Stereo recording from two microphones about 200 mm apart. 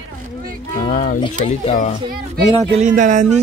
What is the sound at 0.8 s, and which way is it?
Speech, 40° left (ahead or behind).